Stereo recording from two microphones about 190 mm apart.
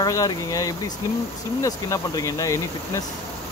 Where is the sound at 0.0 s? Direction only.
20° left (ahead or behind).